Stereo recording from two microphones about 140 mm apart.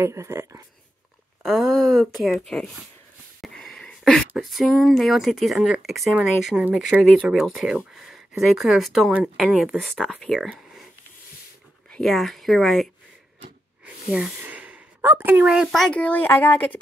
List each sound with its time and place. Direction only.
0.0 s speech: 20° right (ahead or behind)
1.4 s speech: centre (ahead or behind)
3.3 s a sound: centre (ahead or behind)
4.3 s speech: centre (ahead or behind)
10.5 s a sound: centre (ahead or behind)
11.9 s speech: centre (ahead or behind)
14.1 s speech: 10° right (ahead or behind); by 16.8 s 15° left (ahead or behind)